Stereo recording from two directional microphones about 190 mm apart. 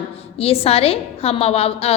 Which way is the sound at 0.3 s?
30° left (ahead or behind).